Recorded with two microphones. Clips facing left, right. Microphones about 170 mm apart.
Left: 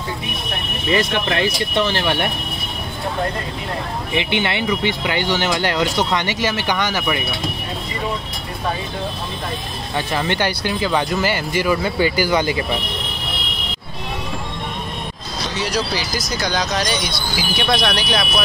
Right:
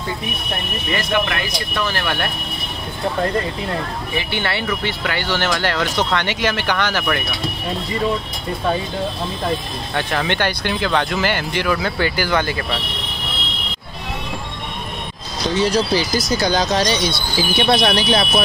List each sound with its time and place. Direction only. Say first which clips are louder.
0.9 s speech: left 2 dB; 30° left (ahead or behind)
4.2 s speech: left 3 dB; 20° left (ahead or behind)
10.4 s speech: even; 10° left (ahead or behind)
15.5 s speech: right 6 dB; 30° right (ahead or behind)